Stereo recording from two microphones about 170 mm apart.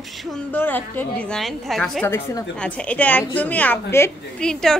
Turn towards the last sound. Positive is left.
turn(degrees=5)  # may be behind; listen again after turning